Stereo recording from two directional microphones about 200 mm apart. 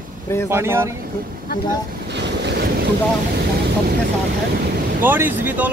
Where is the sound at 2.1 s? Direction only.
60° right (ahead or behind).